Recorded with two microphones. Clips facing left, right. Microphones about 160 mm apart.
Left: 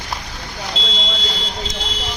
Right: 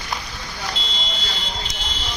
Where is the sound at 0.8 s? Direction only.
90° left.